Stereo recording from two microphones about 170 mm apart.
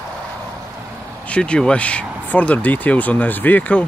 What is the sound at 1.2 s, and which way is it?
Speech, 5° left (ahead or behind).